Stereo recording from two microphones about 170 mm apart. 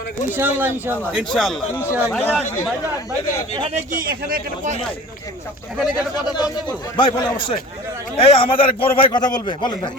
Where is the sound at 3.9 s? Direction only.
60° right (ahead or behind).